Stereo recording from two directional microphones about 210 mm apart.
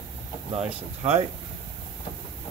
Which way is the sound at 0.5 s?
30° right (ahead or behind).